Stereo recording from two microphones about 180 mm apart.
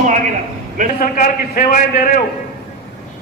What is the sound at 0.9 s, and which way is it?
A man's voice, 45° left (ahead or behind).